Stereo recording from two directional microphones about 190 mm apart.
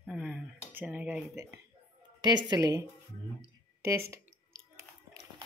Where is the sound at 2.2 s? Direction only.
20° right (ahead or behind).